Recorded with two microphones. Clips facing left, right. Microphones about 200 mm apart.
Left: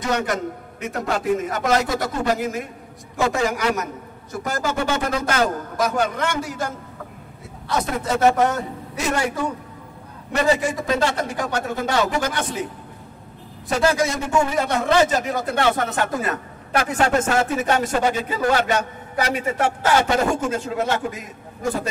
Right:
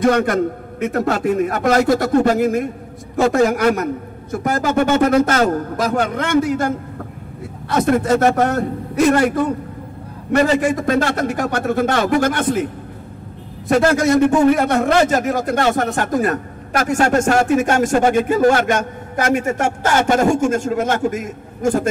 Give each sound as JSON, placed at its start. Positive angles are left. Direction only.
{"t": 0.0, "sound": "a man's voice", "side_deg": -55}
{"t": 7.7, "sound": "speech", "side_deg": -55}
{"t": 13.7, "sound": "a man's voice", "side_deg": -55}